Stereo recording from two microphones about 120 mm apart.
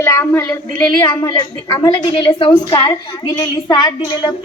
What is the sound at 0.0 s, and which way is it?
Speech, 20° left (ahead or behind).